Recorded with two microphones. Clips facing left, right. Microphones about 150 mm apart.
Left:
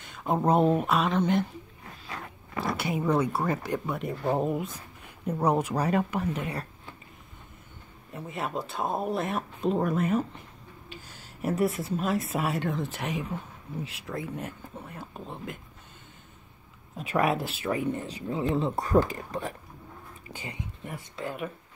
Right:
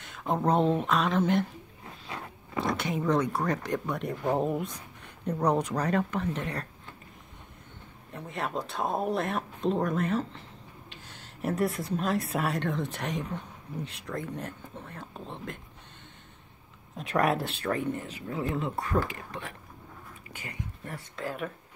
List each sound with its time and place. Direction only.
0.0 s a woman's voice: centre (ahead or behind)
2.0 s a sound: 20° right (ahead or behind)
2.6 s speech: 5° left (ahead or behind)
8.1 s a woman's voice: 5° left (ahead or behind)
16.9 s a woman's voice: 5° left (ahead or behind)
18.0 s speech: 30° left (ahead or behind)
20.2 s speech: 30° left (ahead or behind)
20.8 s speech: 10° left (ahead or behind)